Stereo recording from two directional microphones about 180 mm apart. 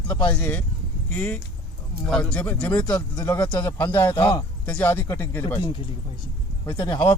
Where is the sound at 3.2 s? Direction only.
10° left (ahead or behind).